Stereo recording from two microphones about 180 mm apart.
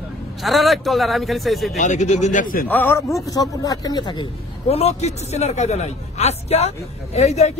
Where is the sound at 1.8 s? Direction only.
40° left (ahead or behind).